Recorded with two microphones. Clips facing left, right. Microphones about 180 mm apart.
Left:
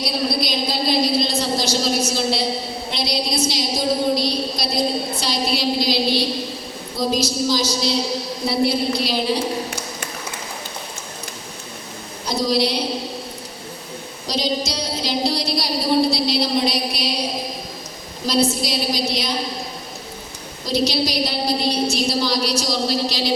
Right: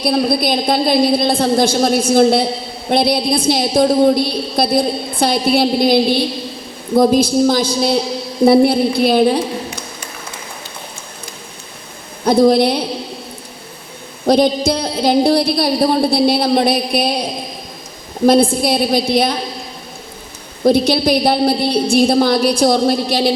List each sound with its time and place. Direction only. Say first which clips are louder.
0.0 s a man's voice: right 7 dB; 55° right (ahead or behind)
12.2 s a man's voice: right 10 dB; 55° right (ahead or behind)
14.3 s a man's voice: right 11 dB; 55° right (ahead or behind)
18.3 s a man's voice: right 8 dB; 55° right (ahead or behind)
20.7 s a man's voice: right 9 dB; 55° right (ahead or behind)